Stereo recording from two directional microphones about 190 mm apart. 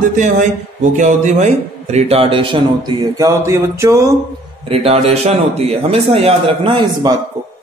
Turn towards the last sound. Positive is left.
turn(degrees=-25)  # may be behind; listen again after turning